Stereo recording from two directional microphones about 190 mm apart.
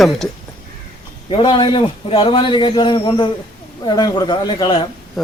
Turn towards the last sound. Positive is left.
turn(degrees=0)  # may be behind; listen again after turning